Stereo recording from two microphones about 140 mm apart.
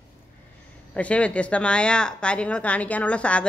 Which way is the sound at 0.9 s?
10° left (ahead or behind).